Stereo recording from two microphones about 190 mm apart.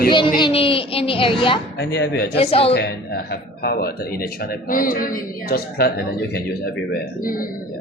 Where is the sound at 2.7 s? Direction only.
55° left (ahead or behind).